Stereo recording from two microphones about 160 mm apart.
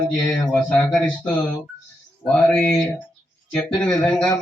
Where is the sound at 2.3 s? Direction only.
5° left (ahead or behind).